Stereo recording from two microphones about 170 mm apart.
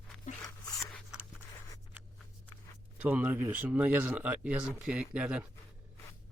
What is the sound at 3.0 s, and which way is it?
Speech, 10° right (ahead or behind).